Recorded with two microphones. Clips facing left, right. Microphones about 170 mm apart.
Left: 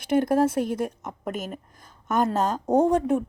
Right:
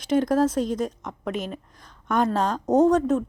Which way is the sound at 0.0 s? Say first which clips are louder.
Even; 55° left (ahead or behind).